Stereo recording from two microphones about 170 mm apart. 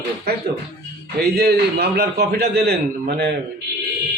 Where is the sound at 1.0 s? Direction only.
70° right (ahead or behind).